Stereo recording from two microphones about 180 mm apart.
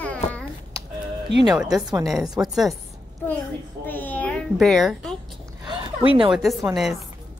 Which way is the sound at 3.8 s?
10° left (ahead or behind).